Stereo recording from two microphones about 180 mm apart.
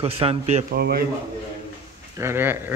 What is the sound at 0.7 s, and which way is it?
Speech, 60° right (ahead or behind).